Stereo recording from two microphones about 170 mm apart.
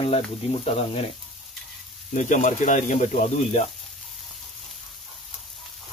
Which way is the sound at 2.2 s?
45° left (ahead or behind).